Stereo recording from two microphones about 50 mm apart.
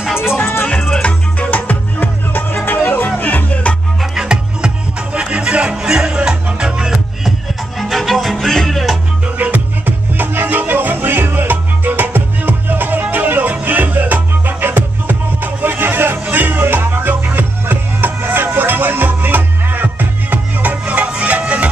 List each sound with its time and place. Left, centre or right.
0.0 s music: centre
0.7 s music: centre
1.0 s music: left
4.0 s music: centre
7.9 s music: centre
9.4 s music: right